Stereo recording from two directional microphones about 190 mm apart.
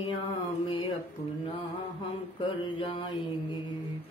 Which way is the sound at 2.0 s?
25° left (ahead or behind).